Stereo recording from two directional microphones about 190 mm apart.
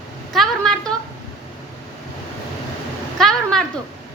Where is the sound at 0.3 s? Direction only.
5° left (ahead or behind).